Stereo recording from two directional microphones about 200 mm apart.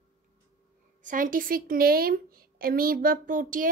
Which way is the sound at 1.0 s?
40° right (ahead or behind).